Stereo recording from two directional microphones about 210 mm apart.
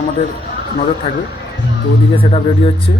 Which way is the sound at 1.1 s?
25° left (ahead or behind).